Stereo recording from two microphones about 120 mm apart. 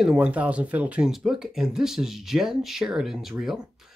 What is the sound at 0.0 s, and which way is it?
Speech, 5° right (ahead or behind).